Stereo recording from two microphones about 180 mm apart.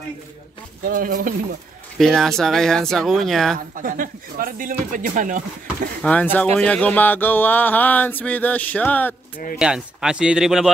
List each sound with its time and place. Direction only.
0.8 s speech: 50° right (ahead or behind)
2.0 s speech: centre (ahead or behind)
3.7 s speech: 50° right (ahead or behind)
6.0 s a sound: 10° left (ahead or behind)
9.6 s speech: 5° right (ahead or behind)